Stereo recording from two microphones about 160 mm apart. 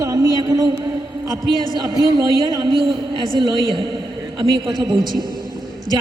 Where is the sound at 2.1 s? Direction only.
30° right (ahead or behind).